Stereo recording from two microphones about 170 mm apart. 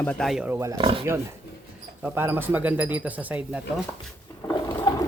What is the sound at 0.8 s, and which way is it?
Speech, 30° right (ahead or behind).